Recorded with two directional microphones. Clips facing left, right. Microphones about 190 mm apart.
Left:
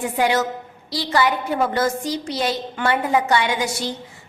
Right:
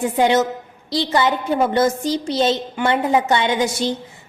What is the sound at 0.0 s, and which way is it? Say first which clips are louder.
A woman's voice: right 4 dB; 25° right (ahead or behind).